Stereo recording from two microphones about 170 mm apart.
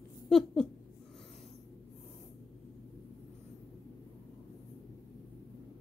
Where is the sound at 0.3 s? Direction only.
5° left (ahead or behind).